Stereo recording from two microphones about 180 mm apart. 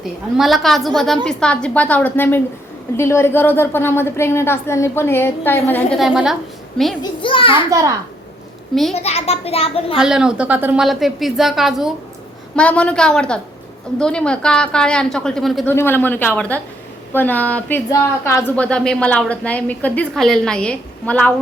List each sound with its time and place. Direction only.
0.0 s a woman's voice: centre (ahead or behind)
6.0 s a woman's voice: 5° right (ahead or behind)
7.0 s a child's voice: 30° left (ahead or behind)
8.9 s a child's voice: 35° left (ahead or behind)
9.9 s a woman's voice: 5° right (ahead or behind)
15.6 s speech: 10° left (ahead or behind)